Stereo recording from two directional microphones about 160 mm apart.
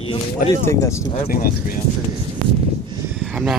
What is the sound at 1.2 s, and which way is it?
Speech, 65° left (ahead or behind).